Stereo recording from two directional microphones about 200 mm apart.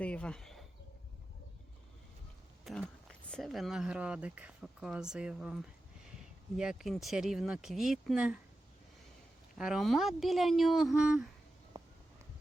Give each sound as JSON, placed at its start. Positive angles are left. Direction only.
{"t": 0.0, "sound": "speech", "side_deg": 5}
{"t": 2.6, "sound": "speech", "side_deg": 0}
{"t": 9.6, "sound": "speech", "side_deg": -5}
{"t": 11.7, "sound": "a sound", "side_deg": -20}